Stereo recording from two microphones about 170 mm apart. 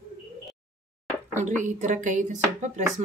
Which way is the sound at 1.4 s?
45° right (ahead or behind).